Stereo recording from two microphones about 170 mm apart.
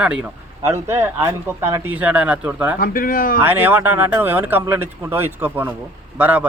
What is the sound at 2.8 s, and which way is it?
Speech, 55° left (ahead or behind).